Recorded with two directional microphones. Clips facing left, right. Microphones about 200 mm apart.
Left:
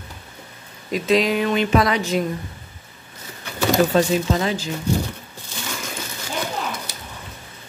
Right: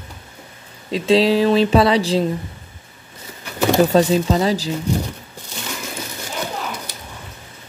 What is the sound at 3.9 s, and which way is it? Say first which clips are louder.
Speech: right 3 dB; 35° right (ahead or behind).